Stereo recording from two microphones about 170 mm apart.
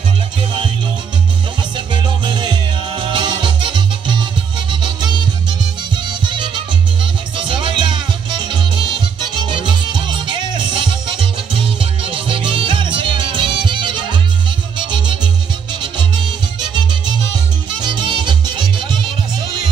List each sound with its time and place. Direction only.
2.0 s music: 25° right (ahead or behind)
6.0 s music: 25° right (ahead or behind)
17.8 s music: 25° right (ahead or behind)